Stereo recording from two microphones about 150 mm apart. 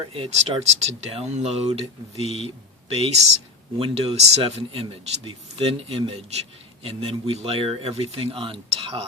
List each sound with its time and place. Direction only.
0.1 s speech: 40° right (ahead or behind)